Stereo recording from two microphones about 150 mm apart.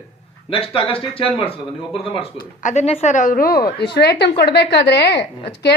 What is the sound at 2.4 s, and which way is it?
Speech, 55° left (ahead or behind).